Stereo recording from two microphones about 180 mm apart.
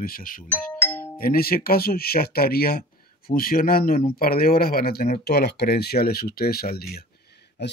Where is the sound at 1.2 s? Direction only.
55° left (ahead or behind).